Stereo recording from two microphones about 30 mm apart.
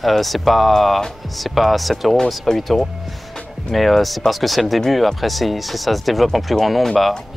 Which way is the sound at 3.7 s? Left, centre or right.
Centre.